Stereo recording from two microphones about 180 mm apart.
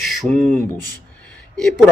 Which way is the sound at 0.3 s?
5° left (ahead or behind).